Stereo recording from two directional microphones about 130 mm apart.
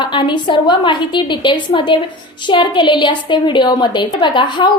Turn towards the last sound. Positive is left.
turn(degrees=35)  # may be behind; listen again after turning